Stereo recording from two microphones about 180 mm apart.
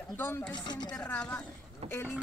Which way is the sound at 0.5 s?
25° left (ahead or behind).